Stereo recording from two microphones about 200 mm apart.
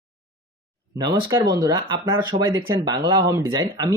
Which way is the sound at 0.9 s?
20° right (ahead or behind).